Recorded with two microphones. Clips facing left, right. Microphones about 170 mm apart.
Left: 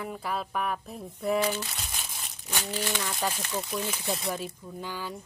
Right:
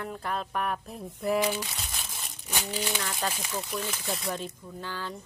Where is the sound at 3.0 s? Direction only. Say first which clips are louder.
Left 1 dB; 10° left (ahead or behind).